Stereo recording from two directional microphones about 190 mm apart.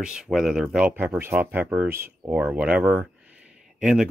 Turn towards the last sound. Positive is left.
turn(degrees=0)  # may be behind; listen again after turning